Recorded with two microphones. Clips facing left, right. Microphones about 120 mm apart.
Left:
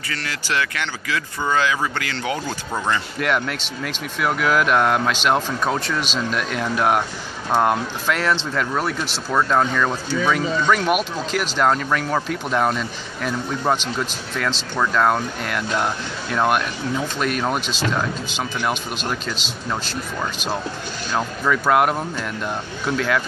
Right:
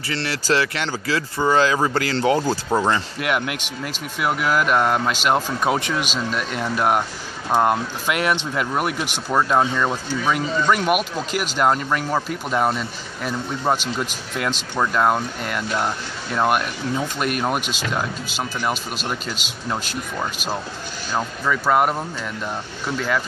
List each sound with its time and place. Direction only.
0.1 s speech: 30° right (ahead or behind)
3.2 s speech: 10° right (ahead or behind)
5.6 s speech: 15° right (ahead or behind)
6.3 s speech: 5° right (ahead or behind)
8.1 s speech: 15° right (ahead or behind)
21.2 s speech: centre (ahead or behind)
22.9 s speech: 5° right (ahead or behind)